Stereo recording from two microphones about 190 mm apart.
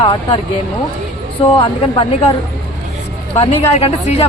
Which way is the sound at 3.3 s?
30° left (ahead or behind).